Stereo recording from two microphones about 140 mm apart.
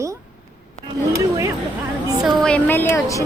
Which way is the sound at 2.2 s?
5° left (ahead or behind).